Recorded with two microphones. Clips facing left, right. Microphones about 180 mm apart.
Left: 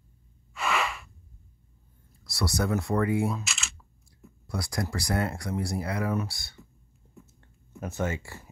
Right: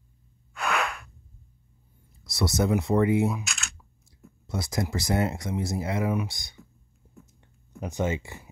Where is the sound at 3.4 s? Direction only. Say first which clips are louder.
Right 1 dB; centre (ahead or behind).